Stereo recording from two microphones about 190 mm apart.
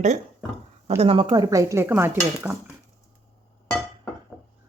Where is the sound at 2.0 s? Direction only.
10° right (ahead or behind).